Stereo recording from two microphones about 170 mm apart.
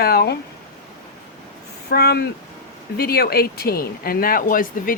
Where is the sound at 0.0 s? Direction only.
65° left (ahead or behind).